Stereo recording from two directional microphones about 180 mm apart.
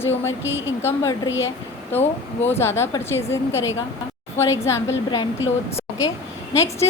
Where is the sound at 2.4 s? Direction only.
15° left (ahead or behind).